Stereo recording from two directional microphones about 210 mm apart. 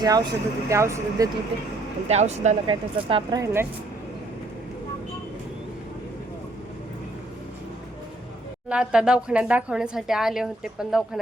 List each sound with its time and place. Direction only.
0.0 s speech: 20° right (ahead or behind)
2.0 s speech: 30° right (ahead or behind)
3.4 s speech: 10° right (ahead or behind)
8.7 s speech: 5° right (ahead or behind)